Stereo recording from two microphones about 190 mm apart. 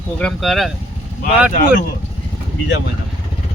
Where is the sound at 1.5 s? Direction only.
45° left (ahead or behind).